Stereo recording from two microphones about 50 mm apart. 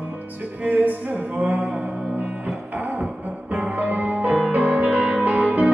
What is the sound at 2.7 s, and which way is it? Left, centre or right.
Music, right.